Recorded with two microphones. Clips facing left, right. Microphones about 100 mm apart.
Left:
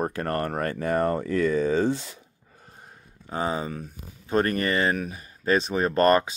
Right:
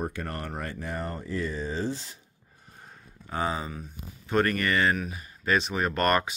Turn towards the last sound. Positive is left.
turn(degrees=30)  # may be behind; listen again after turning